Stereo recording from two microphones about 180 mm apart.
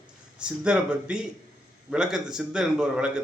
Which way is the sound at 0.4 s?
5° right (ahead or behind).